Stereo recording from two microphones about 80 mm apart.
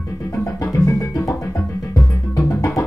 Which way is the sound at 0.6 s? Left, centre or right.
Left.